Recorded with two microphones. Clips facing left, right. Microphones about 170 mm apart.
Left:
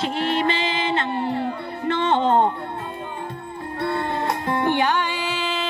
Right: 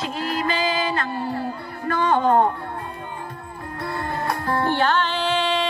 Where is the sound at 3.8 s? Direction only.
25° left (ahead or behind); by 5.7 s 5° left (ahead or behind).